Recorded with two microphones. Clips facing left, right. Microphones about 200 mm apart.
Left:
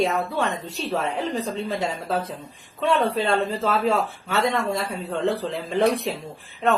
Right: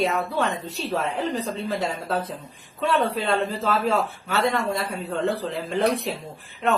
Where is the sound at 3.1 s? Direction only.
Centre (ahead or behind).